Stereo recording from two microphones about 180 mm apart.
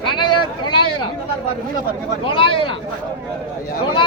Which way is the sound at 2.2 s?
30° left (ahead or behind).